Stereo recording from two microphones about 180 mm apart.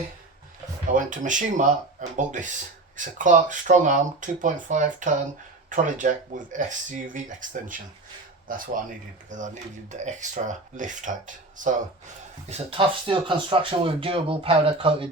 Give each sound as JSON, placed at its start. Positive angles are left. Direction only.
{"t": 0.9, "sound": "speech", "side_deg": -45}
{"t": 12.5, "sound": "speech", "side_deg": -30}